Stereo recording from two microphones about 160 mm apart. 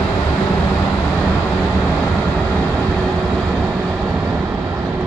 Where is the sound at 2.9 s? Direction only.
5° right (ahead or behind).